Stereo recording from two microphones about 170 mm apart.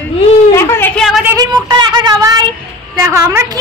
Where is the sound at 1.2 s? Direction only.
20° right (ahead or behind).